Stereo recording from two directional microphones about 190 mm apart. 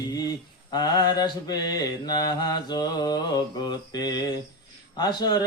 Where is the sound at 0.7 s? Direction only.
20° left (ahead or behind).